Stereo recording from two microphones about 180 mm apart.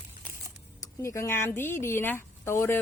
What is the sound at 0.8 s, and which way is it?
Speech, 15° left (ahead or behind).